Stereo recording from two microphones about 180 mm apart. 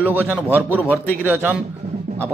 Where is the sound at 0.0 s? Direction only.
10° right (ahead or behind).